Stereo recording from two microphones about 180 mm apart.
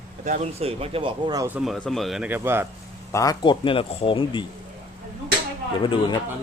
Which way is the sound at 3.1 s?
20° left (ahead or behind).